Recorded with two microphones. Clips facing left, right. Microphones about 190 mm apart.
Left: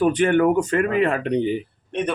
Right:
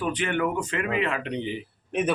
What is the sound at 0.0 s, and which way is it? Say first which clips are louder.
Speech: left 9 dB; 45° left (ahead or behind).